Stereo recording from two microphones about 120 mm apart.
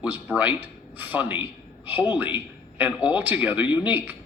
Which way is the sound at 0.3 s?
15° right (ahead or behind).